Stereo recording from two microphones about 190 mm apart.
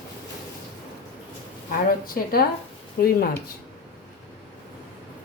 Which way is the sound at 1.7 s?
50° left (ahead or behind).